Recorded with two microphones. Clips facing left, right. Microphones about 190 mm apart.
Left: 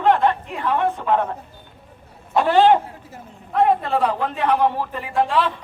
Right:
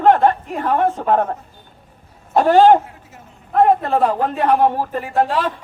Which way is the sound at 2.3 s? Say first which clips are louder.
Right 4 dB; 45° right (ahead or behind).